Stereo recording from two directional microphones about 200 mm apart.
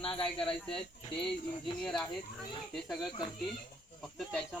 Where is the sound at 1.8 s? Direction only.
5° left (ahead or behind).